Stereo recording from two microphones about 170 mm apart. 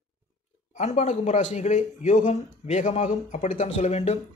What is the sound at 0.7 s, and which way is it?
Speech, 45° left (ahead or behind).